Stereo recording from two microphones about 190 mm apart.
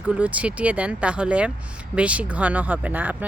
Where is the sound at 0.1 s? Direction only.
5° right (ahead or behind).